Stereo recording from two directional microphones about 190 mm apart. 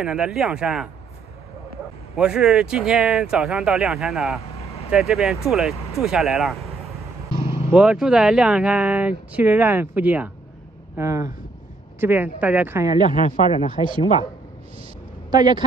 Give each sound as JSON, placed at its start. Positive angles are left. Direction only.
{"t": 0.0, "sound": "speech", "side_deg": -5}
{"t": 2.1, "sound": "speech", "side_deg": -5}
{"t": 4.6, "sound": "vehicle", "side_deg": 30}
{"t": 4.9, "sound": "speech", "side_deg": 0}
{"t": 7.7, "sound": "speech", "side_deg": -5}
{"t": 13.0, "sound": "speech", "side_deg": 40}
{"t": 15.3, "sound": "speech", "side_deg": -20}